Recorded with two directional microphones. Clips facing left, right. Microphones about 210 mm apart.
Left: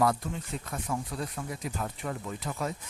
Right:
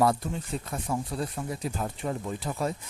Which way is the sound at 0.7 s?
30° right (ahead or behind).